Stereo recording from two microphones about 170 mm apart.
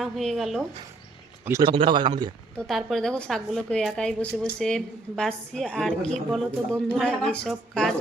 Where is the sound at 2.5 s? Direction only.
Centre (ahead or behind).